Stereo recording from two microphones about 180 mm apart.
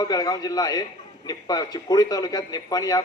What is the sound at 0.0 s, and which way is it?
Speech, 20° left (ahead or behind).